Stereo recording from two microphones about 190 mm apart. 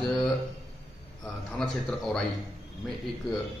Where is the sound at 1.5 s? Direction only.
5° left (ahead or behind).